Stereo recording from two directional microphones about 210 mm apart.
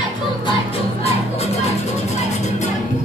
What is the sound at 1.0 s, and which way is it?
Music, 30° left (ahead or behind).